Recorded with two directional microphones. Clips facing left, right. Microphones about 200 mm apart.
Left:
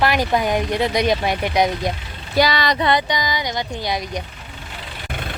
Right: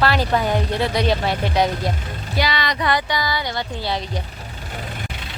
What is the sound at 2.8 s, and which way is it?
A woman's voice, 25° left (ahead or behind).